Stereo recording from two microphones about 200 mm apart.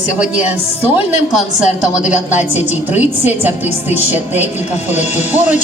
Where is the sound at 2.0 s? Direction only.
5° right (ahead or behind).